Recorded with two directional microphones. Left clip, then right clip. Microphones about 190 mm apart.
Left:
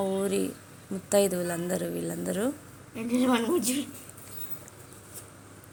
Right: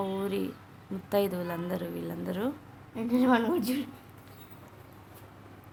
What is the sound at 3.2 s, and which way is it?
Speech, 5° right (ahead or behind).